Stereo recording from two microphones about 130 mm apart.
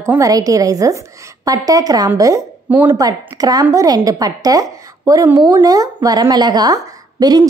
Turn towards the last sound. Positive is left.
turn(degrees=-30)  # may be behind; listen again after turning